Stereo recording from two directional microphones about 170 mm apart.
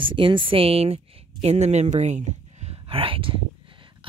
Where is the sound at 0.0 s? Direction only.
30° right (ahead or behind).